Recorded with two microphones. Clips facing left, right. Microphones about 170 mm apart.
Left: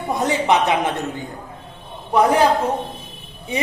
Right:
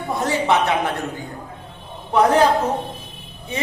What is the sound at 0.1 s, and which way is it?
Speech, 20° left (ahead or behind).